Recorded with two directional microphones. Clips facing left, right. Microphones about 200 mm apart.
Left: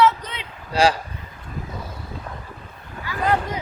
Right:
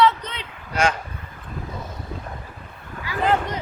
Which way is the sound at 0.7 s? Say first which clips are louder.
Left 4 dB; 35° left (ahead or behind).